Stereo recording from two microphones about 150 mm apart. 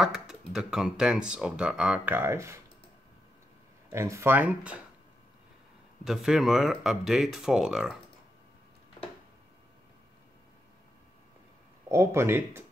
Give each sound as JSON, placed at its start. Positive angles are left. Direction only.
{"t": 0.0, "sound": "speech", "side_deg": -5}
{"t": 3.9, "sound": "speech", "side_deg": -20}
{"t": 6.0, "sound": "speech", "side_deg": 0}
{"t": 11.9, "sound": "speech", "side_deg": -20}